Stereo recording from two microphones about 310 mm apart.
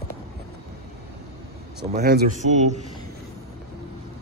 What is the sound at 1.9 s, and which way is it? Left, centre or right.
Speech, right.